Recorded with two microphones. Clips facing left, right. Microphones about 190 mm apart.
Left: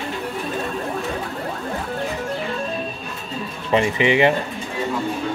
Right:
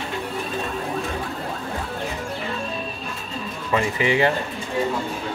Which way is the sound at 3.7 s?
20° left (ahead or behind).